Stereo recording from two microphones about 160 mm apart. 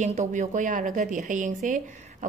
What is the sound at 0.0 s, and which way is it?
A woman's voice, 50° right (ahead or behind).